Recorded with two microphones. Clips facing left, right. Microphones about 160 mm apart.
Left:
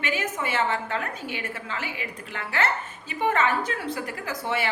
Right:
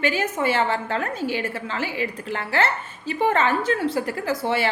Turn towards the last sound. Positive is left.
turn(degrees=-30)  # may be behind; listen again after turning